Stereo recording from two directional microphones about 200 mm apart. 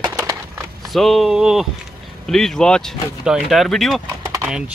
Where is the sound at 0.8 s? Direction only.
Centre (ahead or behind).